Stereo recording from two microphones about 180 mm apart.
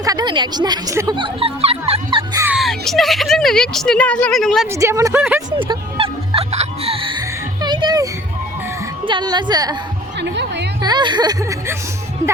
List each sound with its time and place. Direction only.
0.0 s speech: 20° right (ahead or behind)
2.0 s music: 20° right (ahead or behind)
2.5 s a woman's voice: centre (ahead or behind)
4.7 s a woman's voice: 15° right (ahead or behind)
5.5 s music: 25° right (ahead or behind)
7.6 s a sound: 25° right (ahead or behind)
9.0 s speech: 25° right (ahead or behind)
10.2 s music: 75° right (ahead or behind)
10.8 s speech: 25° right (ahead or behind)